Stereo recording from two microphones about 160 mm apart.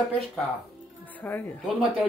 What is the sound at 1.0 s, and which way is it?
Speech, 10° left (ahead or behind).